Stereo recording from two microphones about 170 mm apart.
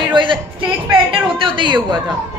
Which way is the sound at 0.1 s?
30° right (ahead or behind).